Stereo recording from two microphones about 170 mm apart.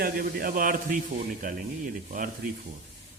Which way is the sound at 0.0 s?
60° right (ahead or behind).